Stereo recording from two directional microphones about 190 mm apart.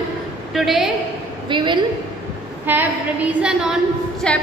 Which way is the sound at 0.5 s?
Centre (ahead or behind).